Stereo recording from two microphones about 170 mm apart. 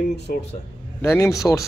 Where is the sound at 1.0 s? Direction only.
15° left (ahead or behind).